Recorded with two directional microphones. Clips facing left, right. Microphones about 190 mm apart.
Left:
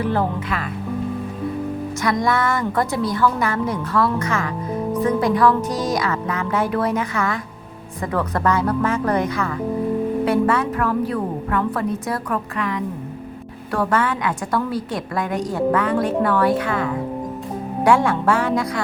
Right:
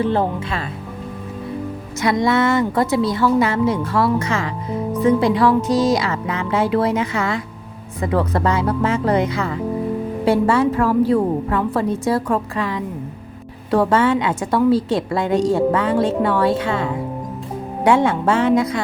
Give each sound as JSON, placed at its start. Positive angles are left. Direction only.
{"t": 0.0, "sound": "a woman's voice", "side_deg": -25}
{"t": 2.0, "sound": "a woman's voice", "side_deg": -25}